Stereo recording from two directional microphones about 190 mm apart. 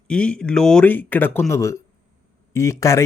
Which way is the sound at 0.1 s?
5° left (ahead or behind).